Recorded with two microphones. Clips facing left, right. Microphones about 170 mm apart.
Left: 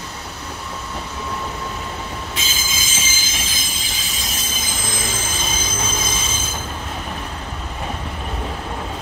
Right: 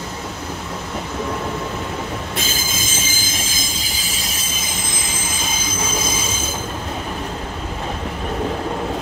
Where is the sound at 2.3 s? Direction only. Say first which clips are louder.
Right 4 dB; 60° right (ahead or behind).